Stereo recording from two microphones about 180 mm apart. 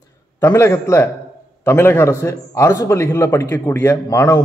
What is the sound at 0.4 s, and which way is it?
A man's voice, 15° left (ahead or behind).